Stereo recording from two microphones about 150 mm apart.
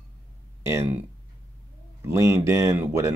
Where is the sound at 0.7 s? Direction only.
15° right (ahead or behind).